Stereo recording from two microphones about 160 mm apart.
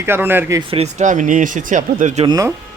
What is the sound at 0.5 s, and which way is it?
Speech, 40° right (ahead or behind).